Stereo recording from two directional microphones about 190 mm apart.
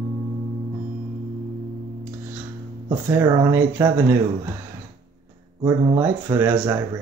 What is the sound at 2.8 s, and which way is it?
Speech, 15° right (ahead or behind).